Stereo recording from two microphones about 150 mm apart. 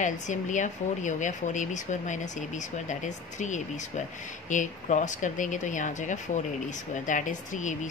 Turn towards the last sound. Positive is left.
turn(degrees=55)  # may be behind; listen again after turning